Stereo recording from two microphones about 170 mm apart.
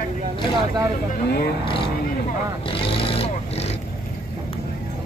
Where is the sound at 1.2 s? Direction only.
70° left (ahead or behind).